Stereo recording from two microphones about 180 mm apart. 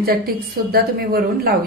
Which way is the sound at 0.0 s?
55° right (ahead or behind).